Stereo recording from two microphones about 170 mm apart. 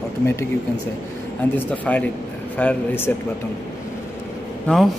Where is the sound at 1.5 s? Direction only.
10° left (ahead or behind).